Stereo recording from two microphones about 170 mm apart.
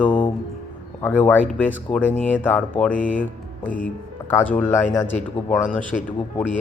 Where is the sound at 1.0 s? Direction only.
10° left (ahead or behind).